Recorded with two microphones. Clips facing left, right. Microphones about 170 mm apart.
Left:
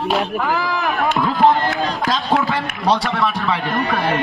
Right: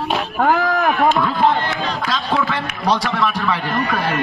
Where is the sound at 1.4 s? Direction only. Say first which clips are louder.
Left 2 dB; 45° left (ahead or behind).